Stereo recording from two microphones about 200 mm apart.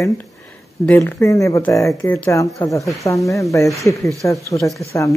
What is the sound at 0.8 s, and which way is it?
Speech, 10° left (ahead or behind).